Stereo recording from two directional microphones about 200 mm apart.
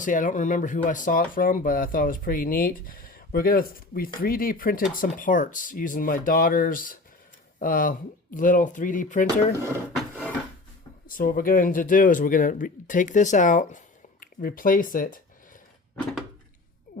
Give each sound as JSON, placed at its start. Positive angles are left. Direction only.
{"t": 0.0, "sound": "speech", "side_deg": 40}
{"t": 9.9, "sound": "a sound", "side_deg": 0}
{"t": 11.1, "sound": "speech", "side_deg": 45}